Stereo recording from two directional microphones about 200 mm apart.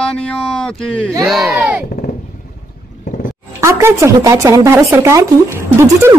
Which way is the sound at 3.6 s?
15° right (ahead or behind).